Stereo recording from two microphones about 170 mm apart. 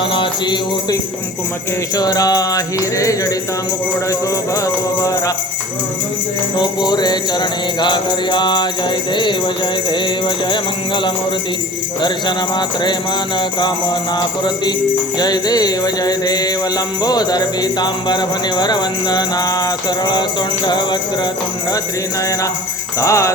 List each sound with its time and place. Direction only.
0.1 s music: 25° left (ahead or behind)
2.0 s music: 20° left (ahead or behind)
4.6 s music: 20° left (ahead or behind)
6.6 s music: 25° left (ahead or behind)
9.9 s music: 30° left (ahead or behind)
12.5 s music: 25° left (ahead or behind)
14.2 s music: 25° left (ahead or behind)
23.0 s jingle bell: 15° left (ahead or behind)